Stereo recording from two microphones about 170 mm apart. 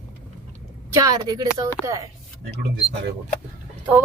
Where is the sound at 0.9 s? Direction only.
20° right (ahead or behind).